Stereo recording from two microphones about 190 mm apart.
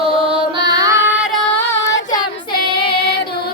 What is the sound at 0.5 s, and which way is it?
Music, 20° right (ahead or behind).